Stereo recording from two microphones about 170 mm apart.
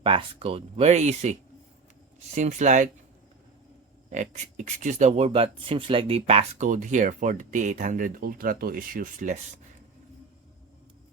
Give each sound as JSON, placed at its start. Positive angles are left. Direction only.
{"t": 0.0, "sound": "speech", "side_deg": -30}
{"t": 4.1, "sound": "speech", "side_deg": -45}